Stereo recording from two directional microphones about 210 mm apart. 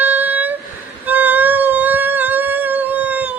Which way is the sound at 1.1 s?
10° right (ahead or behind).